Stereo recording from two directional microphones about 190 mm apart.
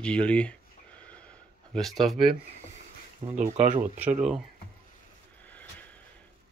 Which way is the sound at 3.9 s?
10° right (ahead or behind).